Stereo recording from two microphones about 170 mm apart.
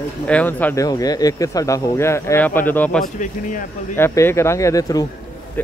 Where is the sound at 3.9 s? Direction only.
15° left (ahead or behind).